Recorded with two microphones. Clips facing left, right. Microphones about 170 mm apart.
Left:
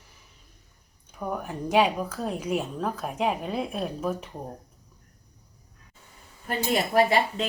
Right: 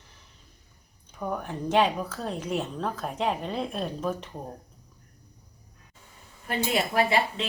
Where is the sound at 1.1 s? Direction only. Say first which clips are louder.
Even; 5° left (ahead or behind).